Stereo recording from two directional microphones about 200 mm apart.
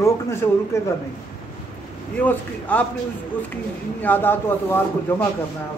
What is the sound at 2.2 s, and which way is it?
Speech, 5° left (ahead or behind).